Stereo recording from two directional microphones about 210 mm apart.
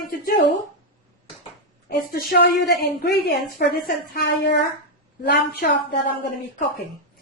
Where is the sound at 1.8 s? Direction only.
45° left (ahead or behind).